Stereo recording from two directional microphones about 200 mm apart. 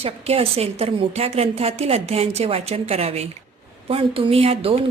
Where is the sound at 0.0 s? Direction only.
30° right (ahead or behind).